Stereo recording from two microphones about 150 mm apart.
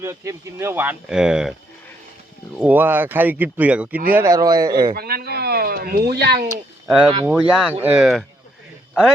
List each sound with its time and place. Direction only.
0.0 s speech: 20° right (ahead or behind)
2.6 s speech: 10° right (ahead or behind)
4.9 s a sound: 90° right
6.8 s speech: 5° right (ahead or behind)